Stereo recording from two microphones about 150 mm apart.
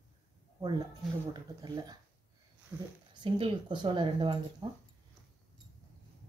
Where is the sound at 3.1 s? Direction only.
35° right (ahead or behind).